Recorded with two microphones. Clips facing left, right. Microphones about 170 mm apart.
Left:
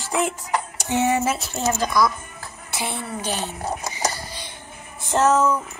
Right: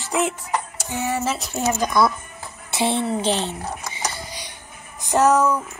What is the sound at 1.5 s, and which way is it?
Speech, 10° right (ahead or behind).